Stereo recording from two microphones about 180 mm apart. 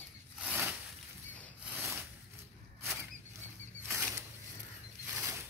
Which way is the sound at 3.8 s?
15° right (ahead or behind).